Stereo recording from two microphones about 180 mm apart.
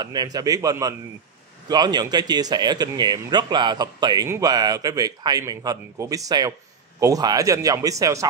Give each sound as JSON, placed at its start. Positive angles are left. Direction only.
{"t": 0.0, "sound": "speech", "side_deg": -20}